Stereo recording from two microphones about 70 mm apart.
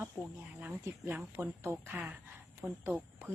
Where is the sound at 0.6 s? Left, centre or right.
Right.